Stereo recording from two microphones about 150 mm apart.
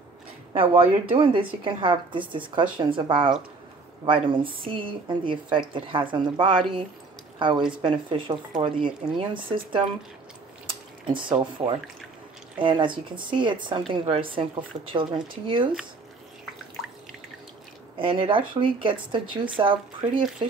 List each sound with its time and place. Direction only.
0.5 s speech: 35° right (ahead or behind)
10.7 s drip: 35° right (ahead or behind)
11.6 s speech: 40° right (ahead or behind)
17.9 s speech: 35° right (ahead or behind)